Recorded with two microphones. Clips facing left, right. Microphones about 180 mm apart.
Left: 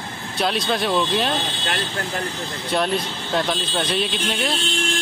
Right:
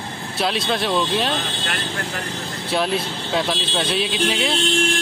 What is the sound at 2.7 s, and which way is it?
Speech, 5° right (ahead or behind).